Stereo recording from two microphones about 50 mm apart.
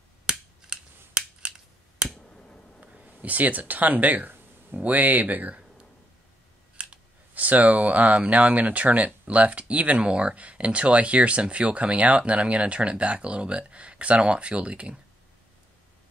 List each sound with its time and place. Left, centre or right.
0.3 s scissors: centre
2.1 s finger snapping: centre
2.8 s speech: right